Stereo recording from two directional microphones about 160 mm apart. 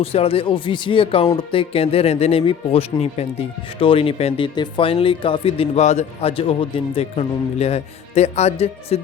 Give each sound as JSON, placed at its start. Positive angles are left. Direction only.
{"t": 0.0, "sound": "speech", "side_deg": 40}